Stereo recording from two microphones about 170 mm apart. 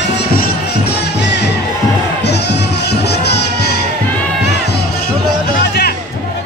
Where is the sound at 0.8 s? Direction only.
90° left.